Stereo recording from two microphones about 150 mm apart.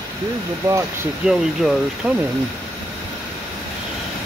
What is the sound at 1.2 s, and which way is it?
Speech, centre (ahead or behind).